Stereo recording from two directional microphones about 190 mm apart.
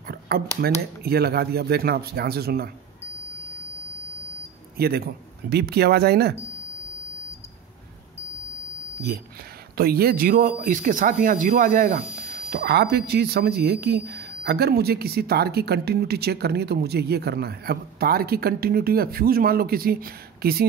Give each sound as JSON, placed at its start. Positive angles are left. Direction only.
{"t": 0.6, "sound": "speech", "side_deg": -55}
{"t": 4.7, "sound": "speech", "side_deg": -55}
{"t": 9.8, "sound": "speech", "side_deg": -55}
{"t": 12.4, "sound": "speech", "side_deg": -55}